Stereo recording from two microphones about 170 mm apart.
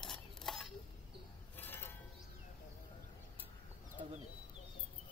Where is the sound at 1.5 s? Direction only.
10° left (ahead or behind).